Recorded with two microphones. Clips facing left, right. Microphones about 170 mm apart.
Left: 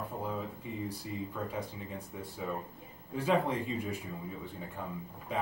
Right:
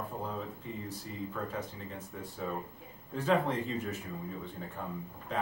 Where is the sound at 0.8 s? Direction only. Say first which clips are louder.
Left 2 dB; 10° left (ahead or behind).